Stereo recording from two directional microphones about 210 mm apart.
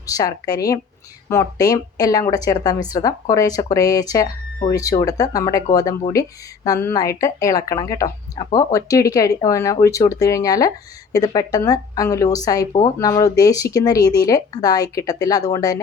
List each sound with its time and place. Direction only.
0.0 s speech: 15° left (ahead or behind)